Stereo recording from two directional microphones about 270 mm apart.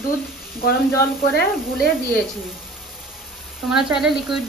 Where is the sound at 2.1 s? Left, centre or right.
Centre.